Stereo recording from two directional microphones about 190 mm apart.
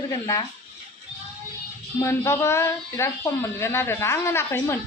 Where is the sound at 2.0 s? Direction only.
10° left (ahead or behind).